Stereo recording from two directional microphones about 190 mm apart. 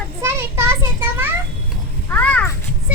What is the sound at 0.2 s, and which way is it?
Children playing, 15° right (ahead or behind).